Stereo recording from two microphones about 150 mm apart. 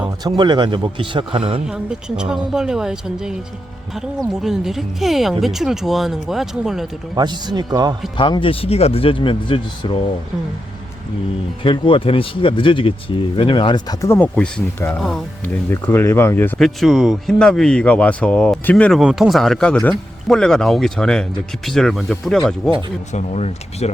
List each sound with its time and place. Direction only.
0.3 s a man's voice: 30° right (ahead or behind)
1.6 s speech: 5° right (ahead or behind)
4.4 s speech: centre (ahead or behind)
7.2 s a man's voice: 30° right (ahead or behind)
8.2 s speech: 35° left (ahead or behind)
11.6 s speech: 35° left (ahead or behind)
14.0 s speech: 15° left (ahead or behind)
14.3 s speech: 5° left (ahead or behind)
15.7 s speech: 15° left (ahead or behind)
16.6 s speech: centre (ahead or behind)
18.9 s speech: 5° right (ahead or behind)
23.1 s speech: 45° left (ahead or behind)